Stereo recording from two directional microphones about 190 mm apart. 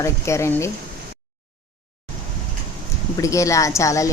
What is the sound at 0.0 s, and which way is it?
Speech, 15° left (ahead or behind).